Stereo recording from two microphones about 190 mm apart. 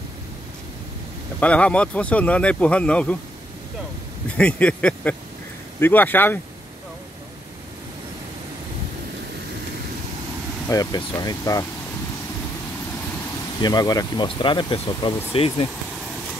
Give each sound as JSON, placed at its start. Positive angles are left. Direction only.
{"t": 1.4, "sound": "speech", "side_deg": 5}
{"t": 4.4, "sound": "speech", "side_deg": 5}
{"t": 10.7, "sound": "speech", "side_deg": 20}
{"t": 13.6, "sound": "speech", "side_deg": 20}